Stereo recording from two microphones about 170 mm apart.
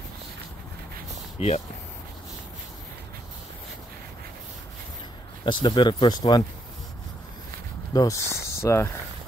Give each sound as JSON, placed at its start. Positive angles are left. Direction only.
{"t": 1.4, "sound": "speech", "side_deg": 35}
{"t": 5.4, "sound": "speech", "side_deg": 25}
{"t": 7.9, "sound": "speech", "side_deg": 20}